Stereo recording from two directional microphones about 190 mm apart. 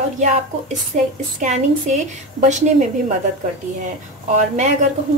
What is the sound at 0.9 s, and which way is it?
A woman's voice, 40° right (ahead or behind).